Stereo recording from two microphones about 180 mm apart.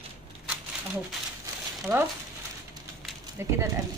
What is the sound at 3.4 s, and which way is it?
Speech, 15° right (ahead or behind).